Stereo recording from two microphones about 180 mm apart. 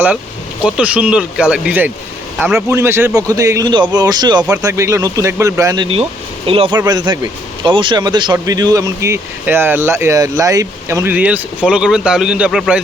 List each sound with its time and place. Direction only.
0.6 s speech: 5° right (ahead or behind)
2.6 s speech: 15° right (ahead or behind)
4.4 s speech: 10° right (ahead or behind)